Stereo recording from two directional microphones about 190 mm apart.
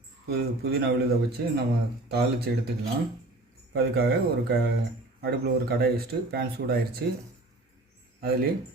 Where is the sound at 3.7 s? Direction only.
55° right (ahead or behind).